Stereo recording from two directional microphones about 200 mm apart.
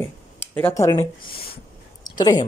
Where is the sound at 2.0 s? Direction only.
20° left (ahead or behind).